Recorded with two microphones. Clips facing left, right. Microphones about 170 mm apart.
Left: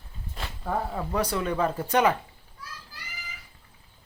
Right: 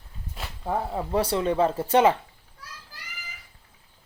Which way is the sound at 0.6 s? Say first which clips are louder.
Right 2 dB; 20° right (ahead or behind).